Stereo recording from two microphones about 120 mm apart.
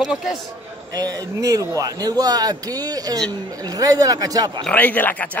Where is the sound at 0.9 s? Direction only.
30° right (ahead or behind).